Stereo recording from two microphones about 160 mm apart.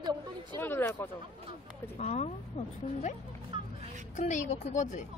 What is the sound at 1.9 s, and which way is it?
Speech, 45° left (ahead or behind).